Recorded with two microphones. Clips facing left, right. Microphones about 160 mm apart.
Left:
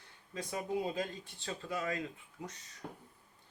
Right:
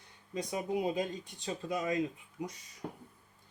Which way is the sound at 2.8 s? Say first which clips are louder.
Right 4 dB; 25° right (ahead or behind).